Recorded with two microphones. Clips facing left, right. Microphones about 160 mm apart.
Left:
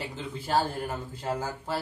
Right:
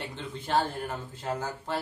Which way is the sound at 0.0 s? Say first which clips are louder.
Left 1 dB; 5° left (ahead or behind).